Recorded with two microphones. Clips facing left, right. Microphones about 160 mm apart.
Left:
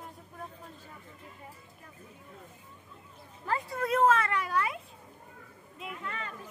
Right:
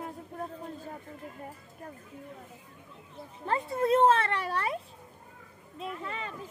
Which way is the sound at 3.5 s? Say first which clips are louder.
Right 4 dB; 25° right (ahead or behind).